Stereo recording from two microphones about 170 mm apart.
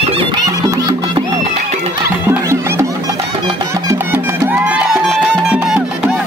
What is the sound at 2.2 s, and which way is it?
Music, 15° right (ahead or behind).